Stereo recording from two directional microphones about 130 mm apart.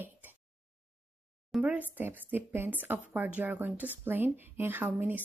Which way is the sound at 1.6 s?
10° right (ahead or behind).